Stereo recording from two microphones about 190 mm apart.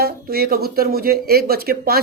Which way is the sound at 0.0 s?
55° right (ahead or behind).